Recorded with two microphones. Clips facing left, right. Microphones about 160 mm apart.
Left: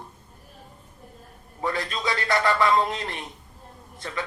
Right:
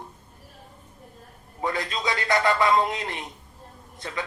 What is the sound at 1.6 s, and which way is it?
A man's voice, 20° right (ahead or behind).